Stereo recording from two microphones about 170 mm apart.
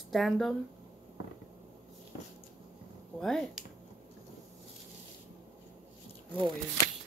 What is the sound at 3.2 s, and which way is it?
Speech, centre (ahead or behind).